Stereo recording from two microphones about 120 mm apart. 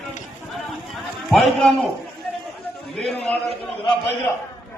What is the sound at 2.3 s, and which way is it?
Chatter, 10° left (ahead or behind).